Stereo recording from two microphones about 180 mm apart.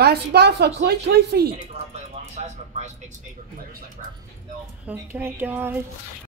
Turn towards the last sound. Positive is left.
turn(degrees=-10)  # may be behind; listen again after turning